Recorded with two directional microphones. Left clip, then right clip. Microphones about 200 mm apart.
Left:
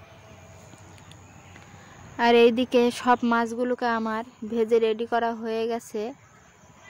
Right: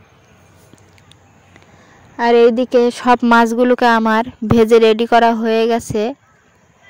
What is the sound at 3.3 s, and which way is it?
Speech, 40° right (ahead or behind).